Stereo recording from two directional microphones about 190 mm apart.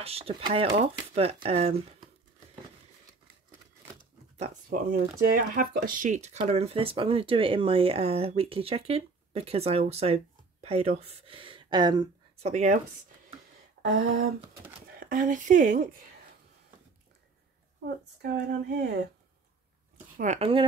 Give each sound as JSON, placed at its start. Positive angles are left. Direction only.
{"t": 0.0, "sound": "speech", "side_deg": -30}
{"t": 4.6, "sound": "speech", "side_deg": -50}
{"t": 12.4, "sound": "speech", "side_deg": -40}
{"t": 13.8, "sound": "speech", "side_deg": -45}
{"t": 17.8, "sound": "speech", "side_deg": -60}
{"t": 20.2, "sound": "speech", "side_deg": -35}